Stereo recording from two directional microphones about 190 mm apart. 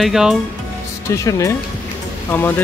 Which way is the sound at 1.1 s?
15° left (ahead or behind).